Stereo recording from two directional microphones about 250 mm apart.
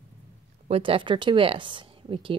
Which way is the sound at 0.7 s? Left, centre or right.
Right.